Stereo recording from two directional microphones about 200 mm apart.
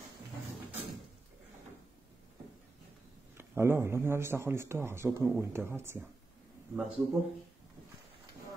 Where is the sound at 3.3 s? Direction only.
10° right (ahead or behind).